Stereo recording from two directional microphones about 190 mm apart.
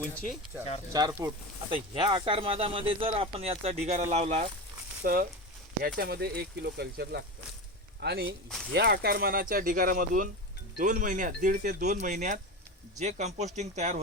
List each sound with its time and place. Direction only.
0.9 s speech: 20° right (ahead or behind); by 4.4 s 35° right (ahead or behind)
5.0 s speech: 50° right (ahead or behind)